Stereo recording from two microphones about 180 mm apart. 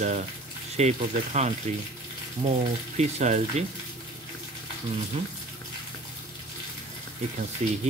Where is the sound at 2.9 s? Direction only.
40° right (ahead or behind).